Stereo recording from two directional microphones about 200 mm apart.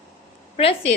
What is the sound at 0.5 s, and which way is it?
Speech, 30° left (ahead or behind).